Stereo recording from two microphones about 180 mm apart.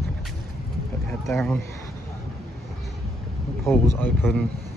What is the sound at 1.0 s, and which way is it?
Speech, 5° left (ahead or behind).